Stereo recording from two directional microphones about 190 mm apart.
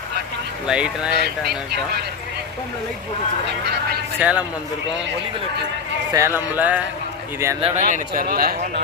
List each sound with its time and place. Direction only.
0.7 s speech: 5° right (ahead or behind)
1.2 s speech: 55° right (ahead or behind)
4.2 s speech: 5° right (ahead or behind)
6.1 s speech: 15° right (ahead or behind)
7.6 s a man's voice: 40° right (ahead or behind)